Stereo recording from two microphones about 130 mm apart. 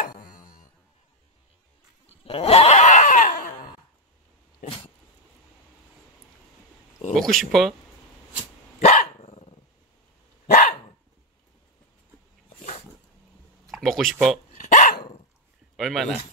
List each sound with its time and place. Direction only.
0.0 s a sound: 90° left
2.2 s a sound: 50° left (ahead or behind); by 3.5 s 70° left (ahead or behind)
4.6 s cat: 45° left (ahead or behind)
7.2 s speech: centre (ahead or behind)
8.7 s dog: 60° left (ahead or behind)
10.4 s dog: 75° left (ahead or behind)
13.7 s a sound: centre (ahead or behind)
14.6 s dog: 75° left (ahead or behind)
15.7 s a man's voice: centre (ahead or behind)